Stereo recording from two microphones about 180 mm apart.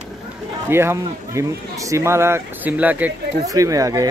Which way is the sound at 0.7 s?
15° right (ahead or behind).